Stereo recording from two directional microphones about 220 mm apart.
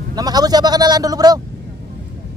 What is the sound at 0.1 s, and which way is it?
A man's voice, 15° right (ahead or behind).